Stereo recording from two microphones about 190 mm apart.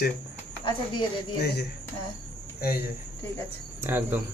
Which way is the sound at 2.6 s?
50° left (ahead or behind).